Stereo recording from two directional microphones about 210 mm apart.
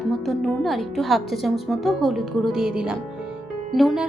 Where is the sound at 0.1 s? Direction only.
Centre (ahead or behind).